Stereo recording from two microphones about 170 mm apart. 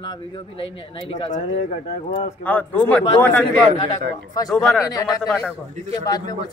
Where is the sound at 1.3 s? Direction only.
45° left (ahead or behind).